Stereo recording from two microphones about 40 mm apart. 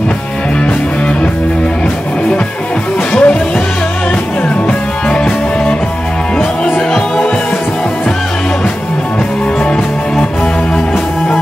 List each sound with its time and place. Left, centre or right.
3.1 s music: left
4.6 s music: left